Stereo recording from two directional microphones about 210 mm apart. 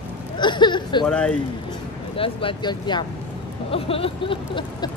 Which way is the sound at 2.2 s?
25° left (ahead or behind).